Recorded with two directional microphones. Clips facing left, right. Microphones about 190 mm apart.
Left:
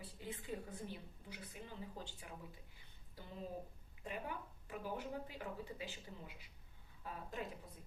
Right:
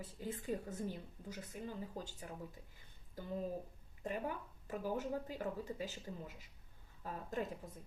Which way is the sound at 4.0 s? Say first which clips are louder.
Right 5 dB; 45° right (ahead or behind).